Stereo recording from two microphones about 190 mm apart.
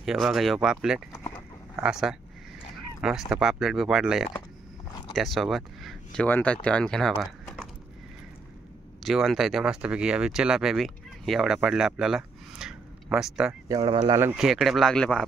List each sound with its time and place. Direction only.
0.0 s speech: centre (ahead or behind)
9.0 s speech: centre (ahead or behind)
13.5 s speech: 20° right (ahead or behind)
14.3 s speech: 5° right (ahead or behind)